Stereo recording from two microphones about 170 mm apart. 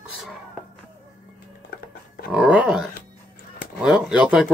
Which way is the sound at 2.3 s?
5° right (ahead or behind).